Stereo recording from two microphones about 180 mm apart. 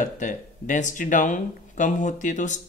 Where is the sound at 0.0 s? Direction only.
45° left (ahead or behind).